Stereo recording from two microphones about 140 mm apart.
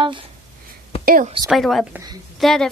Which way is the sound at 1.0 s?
90° right.